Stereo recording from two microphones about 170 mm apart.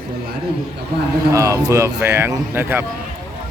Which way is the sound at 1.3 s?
20° right (ahead or behind).